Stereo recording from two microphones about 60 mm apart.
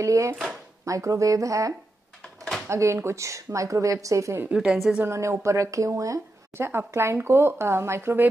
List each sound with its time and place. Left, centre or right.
0.0 s a woman's voice: right
2.7 s a woman's voice: right
4.5 s a woman's voice: centre
5.0 s a woman's voice: right
6.5 s speech: right